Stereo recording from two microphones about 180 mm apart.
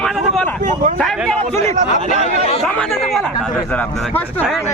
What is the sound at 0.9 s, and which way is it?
Speech, 5° left (ahead or behind).